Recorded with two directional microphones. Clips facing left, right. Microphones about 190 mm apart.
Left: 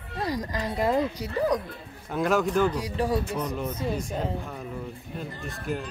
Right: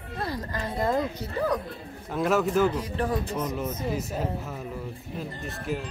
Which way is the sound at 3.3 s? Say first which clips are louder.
Even; 5° right (ahead or behind).